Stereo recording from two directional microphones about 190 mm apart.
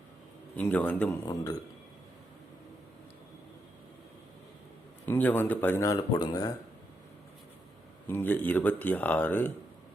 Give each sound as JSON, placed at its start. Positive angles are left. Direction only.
{"t": 0.5, "sound": "speech", "side_deg": 5}
{"t": 1.2, "sound": "a man's voice", "side_deg": 20}
{"t": 5.0, "sound": "speech", "side_deg": 10}
{"t": 8.0, "sound": "speech", "side_deg": 10}